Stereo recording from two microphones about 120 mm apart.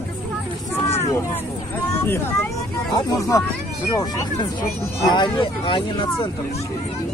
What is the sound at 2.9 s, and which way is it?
Speech, 30° left (ahead or behind).